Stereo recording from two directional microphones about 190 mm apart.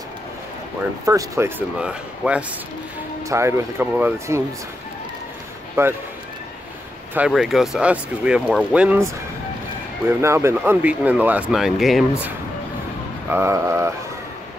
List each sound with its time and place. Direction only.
1.0 s speech: 15° right (ahead or behind)
1.8 s speech: 5° right (ahead or behind)
5.8 s speech: 15° right (ahead or behind)
7.2 s speech: 5° right (ahead or behind)
13.3 s speech: 15° right (ahead or behind)